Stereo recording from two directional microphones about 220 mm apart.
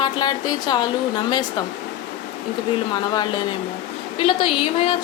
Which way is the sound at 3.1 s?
20° left (ahead or behind).